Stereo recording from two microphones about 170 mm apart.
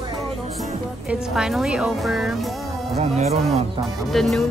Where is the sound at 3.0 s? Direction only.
40° right (ahead or behind).